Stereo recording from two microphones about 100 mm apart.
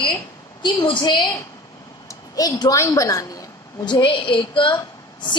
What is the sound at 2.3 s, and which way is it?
Speech, 40° left (ahead or behind).